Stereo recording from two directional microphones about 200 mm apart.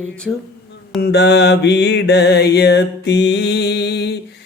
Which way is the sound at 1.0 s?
55° left (ahead or behind).